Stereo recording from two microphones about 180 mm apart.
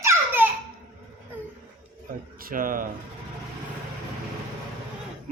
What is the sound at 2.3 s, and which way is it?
Speech, 50° right (ahead or behind).